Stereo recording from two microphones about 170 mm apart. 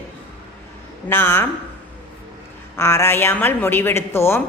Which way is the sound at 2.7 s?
15° left (ahead or behind).